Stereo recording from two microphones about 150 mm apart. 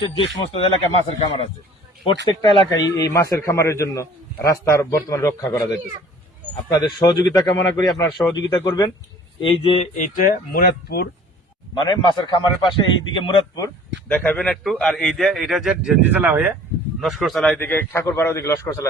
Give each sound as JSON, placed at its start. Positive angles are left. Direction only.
{"t": 0.0, "sound": "a man's voice", "side_deg": 35}
{"t": 6.7, "sound": "a man's voice", "side_deg": 25}
{"t": 9.4, "sound": "speech", "side_deg": 40}
{"t": 10.0, "sound": "speech", "side_deg": 70}
{"t": 11.8, "sound": "a man's voice", "side_deg": 30}
{"t": 14.1, "sound": "a man's voice", "side_deg": 10}
{"t": 17.0, "sound": "a man's voice", "side_deg": 0}
{"t": 17.6, "sound": "a man's voice", "side_deg": 15}